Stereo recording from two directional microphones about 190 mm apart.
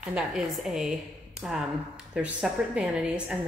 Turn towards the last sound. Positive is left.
turn(degrees=-5)  # may be behind; listen again after turning